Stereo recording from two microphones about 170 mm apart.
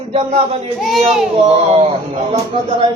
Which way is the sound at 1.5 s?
35° right (ahead or behind).